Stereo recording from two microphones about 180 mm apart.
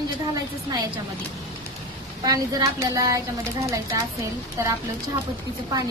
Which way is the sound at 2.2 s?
20° right (ahead or behind).